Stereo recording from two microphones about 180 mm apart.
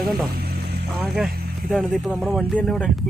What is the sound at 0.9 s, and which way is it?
Speech, centre (ahead or behind).